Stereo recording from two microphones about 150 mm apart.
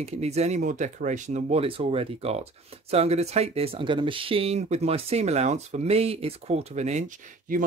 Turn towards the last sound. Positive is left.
turn(degrees=-55)  # may be behind; listen again after turning